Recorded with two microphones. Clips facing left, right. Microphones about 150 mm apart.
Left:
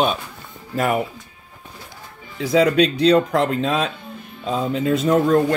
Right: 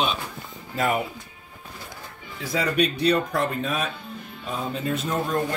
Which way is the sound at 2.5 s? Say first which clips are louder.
Left 8 dB; 90° left.